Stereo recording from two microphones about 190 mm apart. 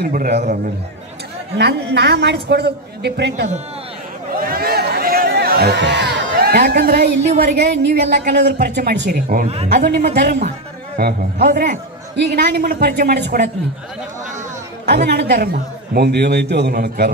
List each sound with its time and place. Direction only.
0.0 s a man's voice: 55° right (ahead or behind)
1.6 s a man's voice: 60° right (ahead or behind)
4.4 s a sound: 50° right (ahead or behind)
7.2 s a man's voice: 55° right (ahead or behind)
10.1 s a man's voice: 60° right (ahead or behind); by 11.8 s 45° right (ahead or behind)
12.2 s a man's voice: 60° right (ahead or behind)
14.9 s a man's voice: 60° right (ahead or behind)